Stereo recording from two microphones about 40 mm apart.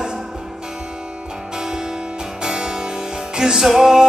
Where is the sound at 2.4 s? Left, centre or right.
Centre.